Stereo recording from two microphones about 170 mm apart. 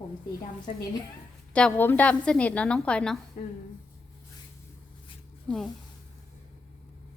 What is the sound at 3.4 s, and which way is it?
Speech, 50° left (ahead or behind).